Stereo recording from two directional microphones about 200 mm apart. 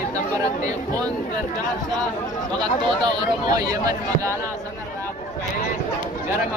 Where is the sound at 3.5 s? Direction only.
20° right (ahead or behind).